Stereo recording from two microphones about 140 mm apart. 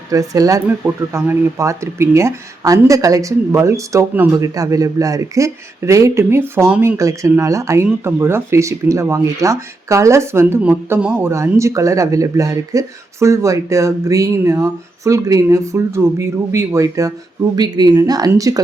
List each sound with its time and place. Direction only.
0.1 s speech: 25° right (ahead or behind)